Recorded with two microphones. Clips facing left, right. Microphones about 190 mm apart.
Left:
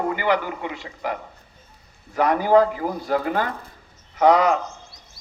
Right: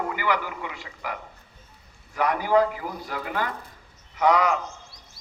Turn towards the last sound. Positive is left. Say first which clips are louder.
# left 5 dB
turn(degrees=35)  # may be behind; listen again after turning